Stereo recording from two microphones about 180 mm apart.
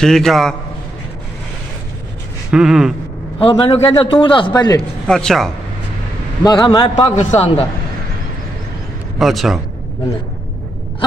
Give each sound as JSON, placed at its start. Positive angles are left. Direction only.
{"t": 0.0, "sound": "a man's voice", "side_deg": 0}
{"t": 2.5, "sound": "a man's voice", "side_deg": -5}
{"t": 3.3, "sound": "a man's voice", "side_deg": 30}
{"t": 5.0, "sound": "a man's voice", "side_deg": 5}
{"t": 6.4, "sound": "a man's voice", "side_deg": 25}
{"t": 9.2, "sound": "a man's voice", "side_deg": 0}